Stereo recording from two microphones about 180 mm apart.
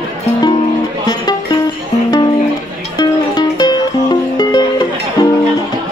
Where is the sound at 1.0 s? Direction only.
25° left (ahead or behind).